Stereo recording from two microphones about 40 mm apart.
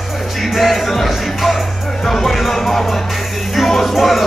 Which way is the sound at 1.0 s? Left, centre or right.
Centre.